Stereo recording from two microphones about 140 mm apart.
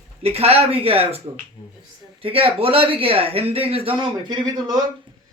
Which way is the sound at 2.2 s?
40° right (ahead or behind).